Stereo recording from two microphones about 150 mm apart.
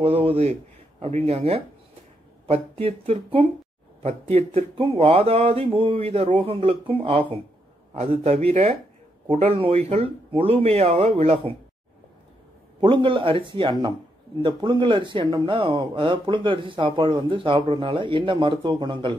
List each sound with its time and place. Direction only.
0.0 s speech: 40° right (ahead or behind)
12.8 s speech: 35° right (ahead or behind)